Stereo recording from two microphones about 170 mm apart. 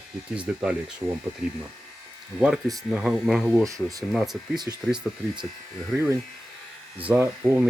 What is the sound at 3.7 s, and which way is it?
Speech, 20° right (ahead or behind).